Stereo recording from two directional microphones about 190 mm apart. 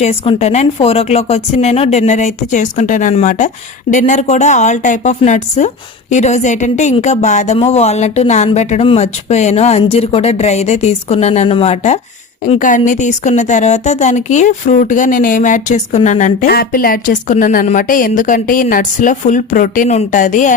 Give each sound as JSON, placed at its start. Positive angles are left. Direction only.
{"t": 0.0, "sound": "speech", "side_deg": 35}